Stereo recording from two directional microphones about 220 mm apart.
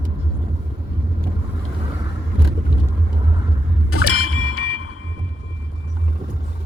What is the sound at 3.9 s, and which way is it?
Music, 85° left.